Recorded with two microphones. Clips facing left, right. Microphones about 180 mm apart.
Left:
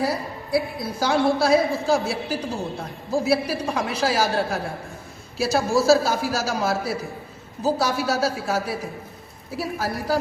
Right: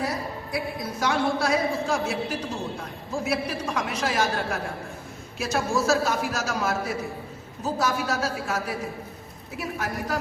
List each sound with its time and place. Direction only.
0.0 s a woman's voice: 30° left (ahead or behind)